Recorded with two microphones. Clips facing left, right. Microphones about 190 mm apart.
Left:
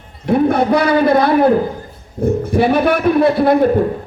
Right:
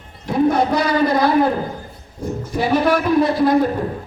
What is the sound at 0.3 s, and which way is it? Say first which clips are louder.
Speech: left 3 dB; 60° left (ahead or behind).